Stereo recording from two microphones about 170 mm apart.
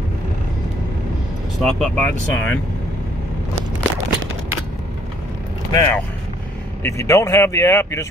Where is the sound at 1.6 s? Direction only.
Centre (ahead or behind).